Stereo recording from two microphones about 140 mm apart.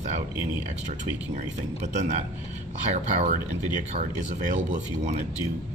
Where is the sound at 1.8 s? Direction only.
60° right (ahead or behind).